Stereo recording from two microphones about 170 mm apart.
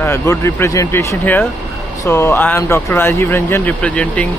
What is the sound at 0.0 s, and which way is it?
Speech, 15° left (ahead or behind).